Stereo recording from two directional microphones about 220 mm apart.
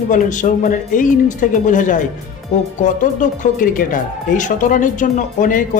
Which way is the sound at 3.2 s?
40° left (ahead or behind).